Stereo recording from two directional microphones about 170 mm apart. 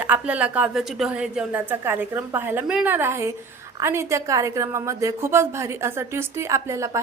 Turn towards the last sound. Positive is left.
turn(degrees=-15)  # may be behind; listen again after turning